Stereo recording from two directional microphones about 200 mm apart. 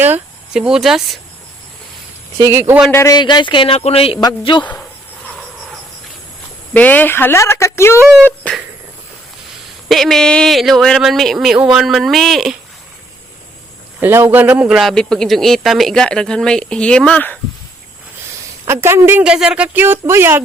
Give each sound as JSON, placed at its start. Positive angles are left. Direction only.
{"t": 0.0, "sound": "speech", "side_deg": -5}
{"t": 2.4, "sound": "a woman's voice", "side_deg": -10}
{"t": 2.9, "sound": "speech", "side_deg": 15}
{"t": 4.6, "sound": "speech", "side_deg": 5}
{"t": 6.7, "sound": "speech", "side_deg": 10}
{"t": 8.1, "sound": "speech", "side_deg": 0}
{"t": 9.9, "sound": "speech", "side_deg": 0}
{"t": 14.0, "sound": "speech", "side_deg": -10}
{"t": 18.6, "sound": "a woman's voice", "side_deg": -15}